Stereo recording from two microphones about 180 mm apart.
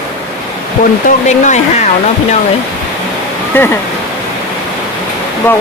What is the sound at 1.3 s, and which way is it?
Speech, 40° left (ahead or behind).